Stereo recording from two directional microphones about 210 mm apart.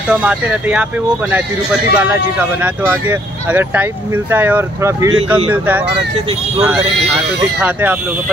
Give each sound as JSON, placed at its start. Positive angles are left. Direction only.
{"t": 0.1, "sound": "speech", "side_deg": -5}
{"t": 6.2, "sound": "speech", "side_deg": -25}
{"t": 6.7, "sound": "speech", "side_deg": -5}